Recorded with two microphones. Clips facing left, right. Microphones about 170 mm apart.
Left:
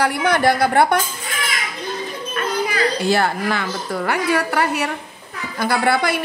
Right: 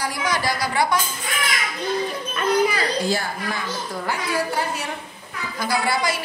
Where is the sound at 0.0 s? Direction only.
60° left (ahead or behind).